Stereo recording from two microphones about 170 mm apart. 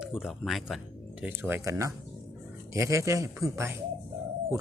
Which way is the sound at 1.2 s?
15° right (ahead or behind).